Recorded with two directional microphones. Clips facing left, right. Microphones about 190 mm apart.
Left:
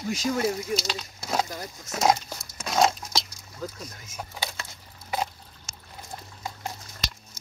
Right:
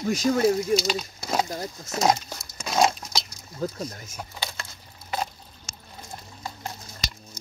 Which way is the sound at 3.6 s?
35° right (ahead or behind).